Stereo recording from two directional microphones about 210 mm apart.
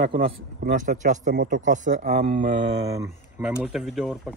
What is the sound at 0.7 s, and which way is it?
Speech, 35° right (ahead or behind).